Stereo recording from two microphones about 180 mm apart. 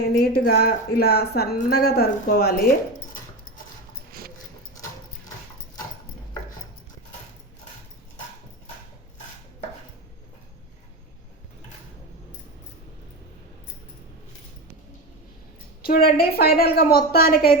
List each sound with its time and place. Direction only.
0.0 s a woman's voice: 65° left (ahead or behind)
15.8 s a woman's voice: 55° left (ahead or behind)